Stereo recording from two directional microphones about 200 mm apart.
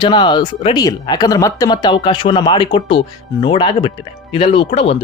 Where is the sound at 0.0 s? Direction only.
25° left (ahead or behind).